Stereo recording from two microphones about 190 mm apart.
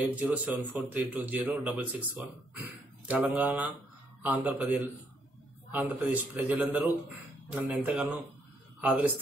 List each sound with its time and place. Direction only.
0.1 s speech: 10° right (ahead or behind)